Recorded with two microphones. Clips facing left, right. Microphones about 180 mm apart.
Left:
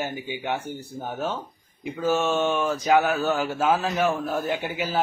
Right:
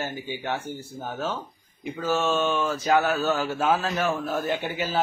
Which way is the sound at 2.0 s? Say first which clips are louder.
Left 2 dB; 15° left (ahead or behind).